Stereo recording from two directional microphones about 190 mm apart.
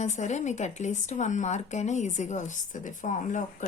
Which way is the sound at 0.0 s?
40° left (ahead or behind).